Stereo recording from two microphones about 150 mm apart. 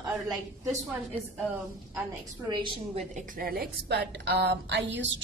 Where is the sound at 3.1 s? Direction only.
60° right (ahead or behind); by 4.8 s 90° right.